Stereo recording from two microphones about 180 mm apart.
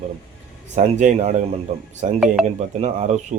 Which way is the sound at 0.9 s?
40° right (ahead or behind).